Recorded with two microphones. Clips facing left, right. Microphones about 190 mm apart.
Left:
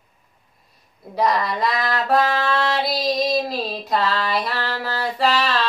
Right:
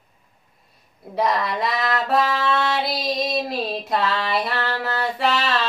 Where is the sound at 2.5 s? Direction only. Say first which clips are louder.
Left 1 dB; centre (ahead or behind).